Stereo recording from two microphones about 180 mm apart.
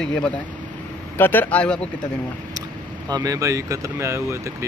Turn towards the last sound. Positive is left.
turn(degrees=-15)  # may be behind; listen again after turning